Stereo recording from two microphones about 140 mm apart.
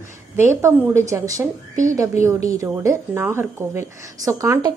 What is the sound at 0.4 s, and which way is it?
A woman's voice, 20° right (ahead or behind).